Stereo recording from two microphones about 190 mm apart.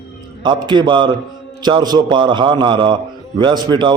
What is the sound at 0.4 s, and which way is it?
A man's voice, 25° right (ahead or behind).